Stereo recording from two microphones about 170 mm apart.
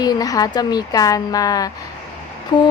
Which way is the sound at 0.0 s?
20° left (ahead or behind).